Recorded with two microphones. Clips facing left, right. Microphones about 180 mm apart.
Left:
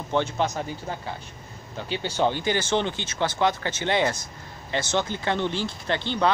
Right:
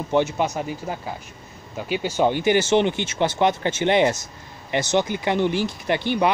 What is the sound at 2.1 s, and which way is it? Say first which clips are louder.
Speech: right 5 dB; 15° right (ahead or behind).